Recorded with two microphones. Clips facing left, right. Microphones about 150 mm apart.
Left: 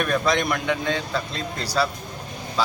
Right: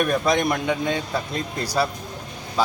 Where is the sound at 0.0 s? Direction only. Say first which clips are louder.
Right 2 dB; 15° right (ahead or behind).